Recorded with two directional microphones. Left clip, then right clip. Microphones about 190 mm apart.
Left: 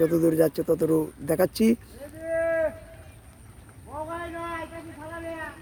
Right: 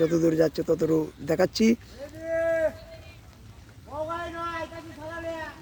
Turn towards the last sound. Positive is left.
turn(degrees=-50)  # may be behind; listen again after turning